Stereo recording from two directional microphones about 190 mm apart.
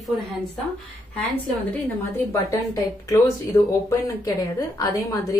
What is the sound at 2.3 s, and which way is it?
Speech, 15° left (ahead or behind).